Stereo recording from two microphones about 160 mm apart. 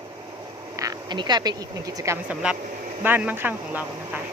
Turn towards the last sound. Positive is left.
turn(degrees=-10)  # may be behind; listen again after turning